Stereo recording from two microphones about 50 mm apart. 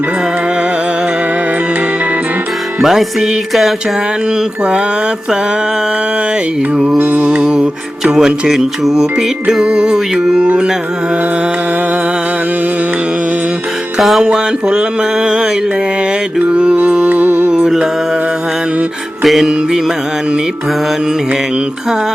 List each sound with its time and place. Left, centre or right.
2.8 s music: centre
6.7 s music: centre
14.2 s music: centre
16.5 s music: right
19.2 s music: centre